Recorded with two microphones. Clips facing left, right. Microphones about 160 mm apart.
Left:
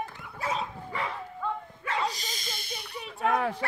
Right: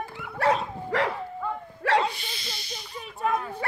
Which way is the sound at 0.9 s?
90° right.